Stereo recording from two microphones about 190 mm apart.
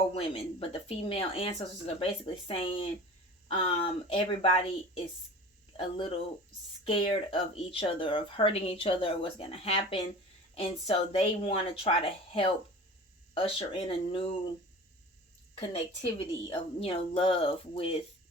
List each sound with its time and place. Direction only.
0.1 s speech: 30° left (ahead or behind)
15.5 s speech: 30° left (ahead or behind)